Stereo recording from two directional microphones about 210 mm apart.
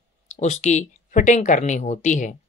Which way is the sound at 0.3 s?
35° left (ahead or behind).